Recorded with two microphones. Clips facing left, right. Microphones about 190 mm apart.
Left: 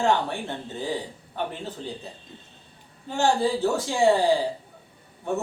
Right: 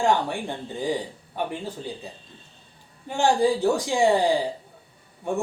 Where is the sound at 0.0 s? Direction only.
10° right (ahead or behind).